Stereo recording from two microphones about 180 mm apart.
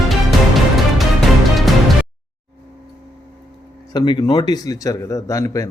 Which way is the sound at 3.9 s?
25° left (ahead or behind).